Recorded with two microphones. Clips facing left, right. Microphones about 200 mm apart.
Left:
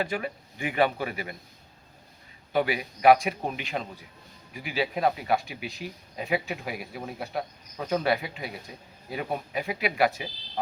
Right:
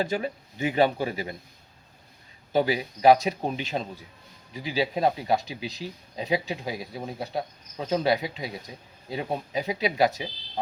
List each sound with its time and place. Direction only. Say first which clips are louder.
0.0 s speech: right 3 dB; 25° right (ahead or behind)
2.5 s speech: right 2 dB; 30° right (ahead or behind)